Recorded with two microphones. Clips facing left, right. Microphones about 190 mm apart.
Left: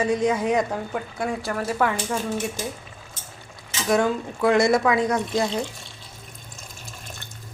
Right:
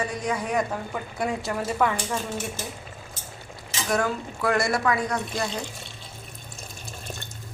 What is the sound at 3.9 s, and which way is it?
Speech, 20° left (ahead or behind).